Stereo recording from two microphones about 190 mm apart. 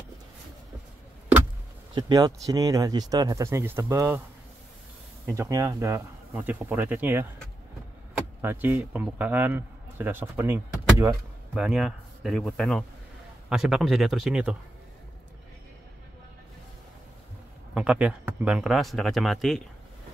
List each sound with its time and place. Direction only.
2.0 s speech: 20° right (ahead or behind)
5.2 s speech: 15° right (ahead or behind)
8.4 s a man's voice: 10° right (ahead or behind)
11.6 s speech: centre (ahead or behind)
17.7 s speech: 5° right (ahead or behind)